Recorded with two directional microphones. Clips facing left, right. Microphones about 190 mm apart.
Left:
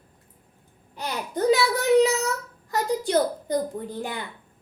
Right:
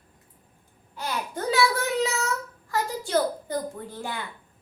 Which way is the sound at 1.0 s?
20° left (ahead or behind).